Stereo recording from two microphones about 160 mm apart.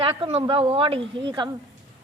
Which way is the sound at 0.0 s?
35° right (ahead or behind).